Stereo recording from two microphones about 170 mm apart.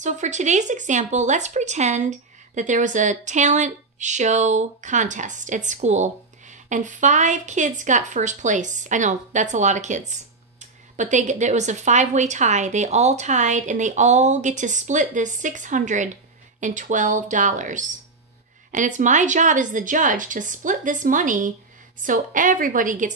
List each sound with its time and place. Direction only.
0.0 s speech: 45° right (ahead or behind)